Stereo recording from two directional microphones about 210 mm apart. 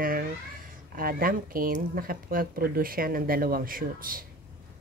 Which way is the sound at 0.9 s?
45° right (ahead or behind).